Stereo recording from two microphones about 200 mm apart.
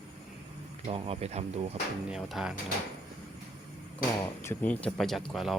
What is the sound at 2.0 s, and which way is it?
Speech, 5° right (ahead or behind).